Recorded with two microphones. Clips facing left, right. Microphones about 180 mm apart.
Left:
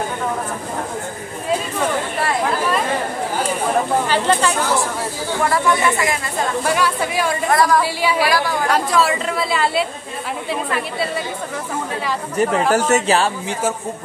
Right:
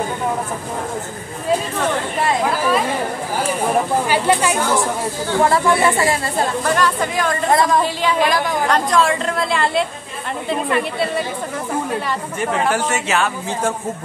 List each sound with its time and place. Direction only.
4.1 s speech: 15° right (ahead or behind)
5.4 s speech: 25° right (ahead or behind)
6.6 s speech: 10° left (ahead or behind)
7.5 s a woman's voice: 20° right (ahead or behind)
7.8 s a woman's voice: 10° left (ahead or behind)
12.7 s speech: 35° left (ahead or behind)
13.5 s speech: 5° left (ahead or behind)